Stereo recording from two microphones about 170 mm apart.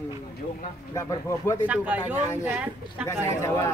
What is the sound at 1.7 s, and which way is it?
Speech, 10° right (ahead or behind).